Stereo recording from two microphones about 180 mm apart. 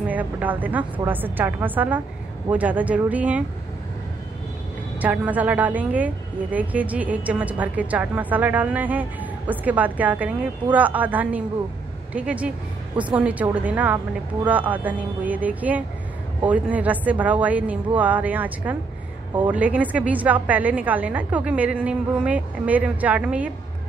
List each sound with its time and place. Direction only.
0.0 s a woman's voice: 10° right (ahead or behind)
5.0 s a woman's voice: 10° right (ahead or behind)